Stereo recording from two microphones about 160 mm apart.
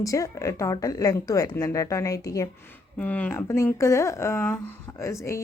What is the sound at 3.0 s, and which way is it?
Speech, 10° left (ahead or behind).